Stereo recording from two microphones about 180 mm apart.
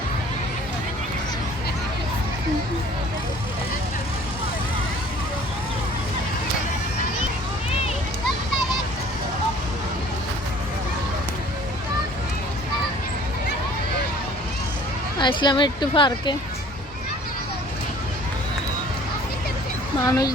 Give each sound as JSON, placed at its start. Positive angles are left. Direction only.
{"t": 15.2, "sound": "speech", "side_deg": 25}
{"t": 20.1, "sound": "speech", "side_deg": 20}